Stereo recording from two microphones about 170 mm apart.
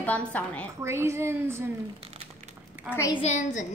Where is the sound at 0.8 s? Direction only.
15° right (ahead or behind).